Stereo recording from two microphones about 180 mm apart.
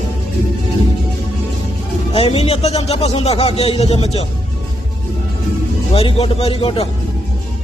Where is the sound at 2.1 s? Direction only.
35° left (ahead or behind).